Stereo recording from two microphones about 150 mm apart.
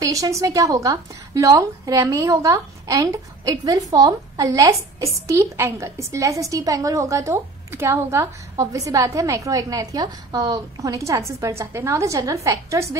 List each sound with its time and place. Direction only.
0.0 s a woman's voice: 20° right (ahead or behind)